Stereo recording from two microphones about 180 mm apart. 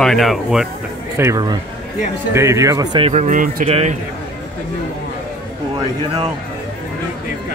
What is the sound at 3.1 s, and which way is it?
Speech, 40° right (ahead or behind).